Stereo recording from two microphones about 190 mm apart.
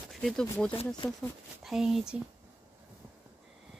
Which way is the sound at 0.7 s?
30° left (ahead or behind).